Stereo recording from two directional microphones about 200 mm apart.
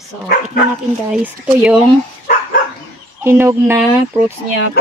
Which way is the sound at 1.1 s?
5° right (ahead or behind).